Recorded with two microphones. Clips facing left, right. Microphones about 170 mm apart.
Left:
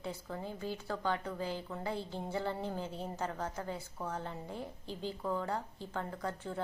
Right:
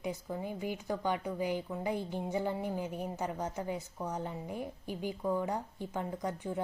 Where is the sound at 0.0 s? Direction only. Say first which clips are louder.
Right 4 dB; 15° right (ahead or behind).